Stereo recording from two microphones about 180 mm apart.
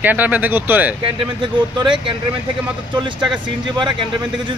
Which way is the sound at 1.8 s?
25° right (ahead or behind).